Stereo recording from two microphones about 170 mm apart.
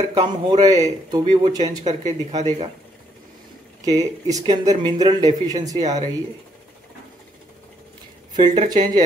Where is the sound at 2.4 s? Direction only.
40° right (ahead or behind).